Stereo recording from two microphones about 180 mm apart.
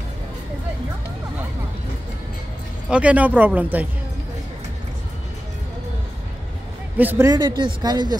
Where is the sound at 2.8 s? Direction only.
5° right (ahead or behind).